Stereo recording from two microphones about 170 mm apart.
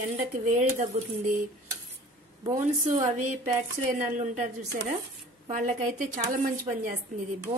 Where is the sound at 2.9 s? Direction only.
45° right (ahead or behind).